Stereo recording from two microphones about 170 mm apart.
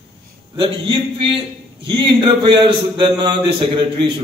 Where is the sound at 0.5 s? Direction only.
30° right (ahead or behind).